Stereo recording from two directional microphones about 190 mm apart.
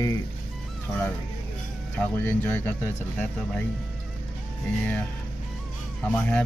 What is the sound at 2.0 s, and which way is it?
Speech, 10° left (ahead or behind).